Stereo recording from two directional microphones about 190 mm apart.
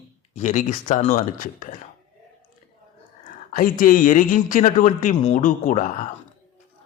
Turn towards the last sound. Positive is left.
turn(degrees=40)  # may be behind; listen again after turning